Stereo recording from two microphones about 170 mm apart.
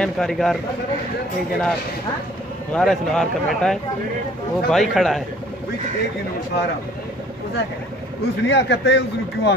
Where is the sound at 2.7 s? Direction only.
Centre (ahead or behind).